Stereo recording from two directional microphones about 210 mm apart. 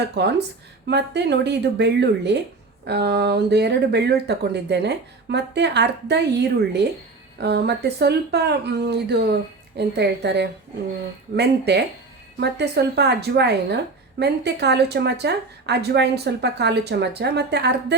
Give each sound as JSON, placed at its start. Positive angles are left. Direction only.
{"t": 0.2, "sound": "a woman's voice", "side_deg": -50}